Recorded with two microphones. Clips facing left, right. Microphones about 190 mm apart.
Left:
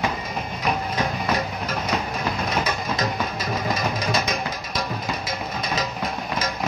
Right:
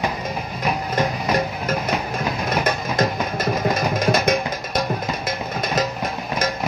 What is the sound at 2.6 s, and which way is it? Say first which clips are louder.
Music: right 7 dB; 50° right (ahead or behind).